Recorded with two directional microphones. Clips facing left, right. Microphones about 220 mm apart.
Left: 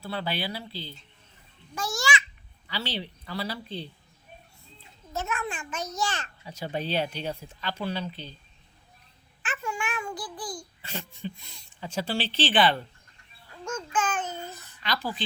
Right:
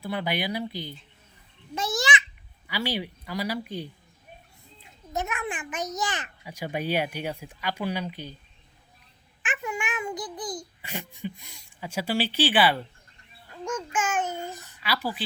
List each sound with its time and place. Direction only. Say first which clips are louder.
0.0 s a child's voice: right 3 dB; 15° right (ahead or behind)
5.1 s a child's voice: right 1 dB; 15° right (ahead or behind)
9.4 s a child's voice: right 1 dB; 15° right (ahead or behind)